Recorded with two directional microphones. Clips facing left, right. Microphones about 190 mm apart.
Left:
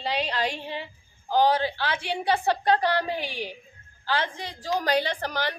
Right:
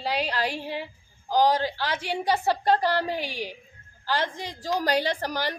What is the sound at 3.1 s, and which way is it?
Speech, 40° right (ahead or behind).